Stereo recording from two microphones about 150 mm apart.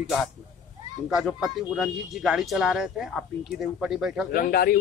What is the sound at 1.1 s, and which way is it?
Speech, centre (ahead or behind).